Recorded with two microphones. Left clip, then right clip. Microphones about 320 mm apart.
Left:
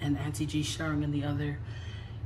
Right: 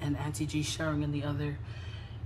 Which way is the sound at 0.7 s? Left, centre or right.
Right.